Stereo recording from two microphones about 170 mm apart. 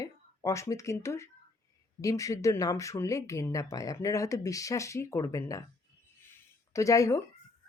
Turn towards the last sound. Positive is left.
turn(degrees=20)  # may be behind; listen again after turning